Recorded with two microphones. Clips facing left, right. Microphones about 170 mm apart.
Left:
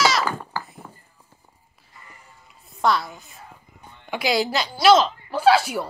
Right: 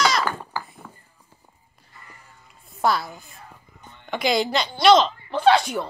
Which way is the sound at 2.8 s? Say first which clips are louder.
Left 1 dB; centre (ahead or behind).